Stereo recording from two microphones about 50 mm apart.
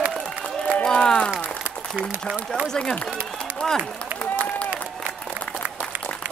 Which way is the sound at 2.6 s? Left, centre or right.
Centre.